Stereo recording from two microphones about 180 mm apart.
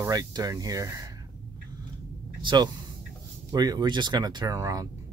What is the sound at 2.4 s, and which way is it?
Speech, 25° right (ahead or behind).